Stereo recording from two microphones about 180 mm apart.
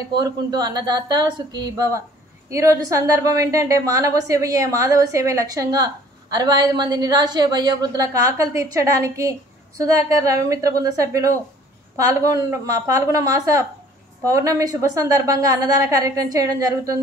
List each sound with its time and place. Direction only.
0.1 s a woman's voice: 20° right (ahead or behind)